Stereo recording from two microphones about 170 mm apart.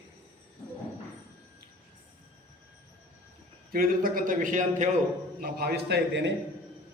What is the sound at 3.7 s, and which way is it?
A man's voice, 55° right (ahead or behind).